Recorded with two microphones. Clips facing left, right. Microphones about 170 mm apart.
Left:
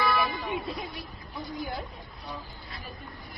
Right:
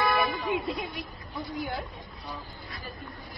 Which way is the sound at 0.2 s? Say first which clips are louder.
Right 2 dB; centre (ahead or behind).